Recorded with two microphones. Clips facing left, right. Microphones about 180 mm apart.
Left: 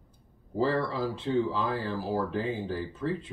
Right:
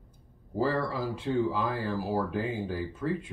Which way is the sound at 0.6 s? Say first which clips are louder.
Left 1 dB; 10° right (ahead or behind).